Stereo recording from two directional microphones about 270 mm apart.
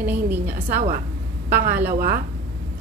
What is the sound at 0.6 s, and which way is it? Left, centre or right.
A woman's voice, right.